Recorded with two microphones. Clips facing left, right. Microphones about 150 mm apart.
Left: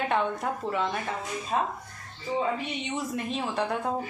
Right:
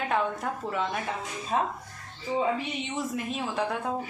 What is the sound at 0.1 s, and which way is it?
Speech, centre (ahead or behind).